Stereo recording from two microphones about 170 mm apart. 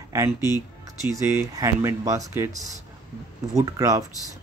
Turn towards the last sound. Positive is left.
turn(degrees=-20)  # may be behind; listen again after turning